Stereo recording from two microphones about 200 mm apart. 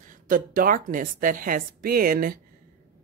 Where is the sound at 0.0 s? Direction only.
40° right (ahead or behind).